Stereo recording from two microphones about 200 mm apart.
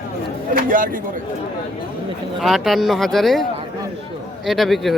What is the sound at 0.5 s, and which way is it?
Speech, 45° right (ahead or behind).